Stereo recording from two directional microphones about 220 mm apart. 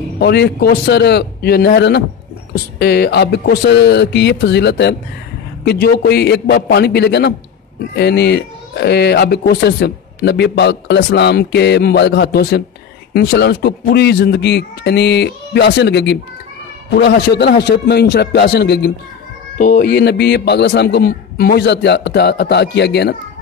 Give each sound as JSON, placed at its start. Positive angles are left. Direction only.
{"t": 0.2, "sound": "speech", "side_deg": 50}